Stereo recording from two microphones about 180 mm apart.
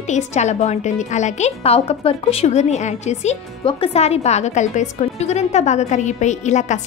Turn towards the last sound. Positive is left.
turn(degrees=40)  # may be behind; listen again after turning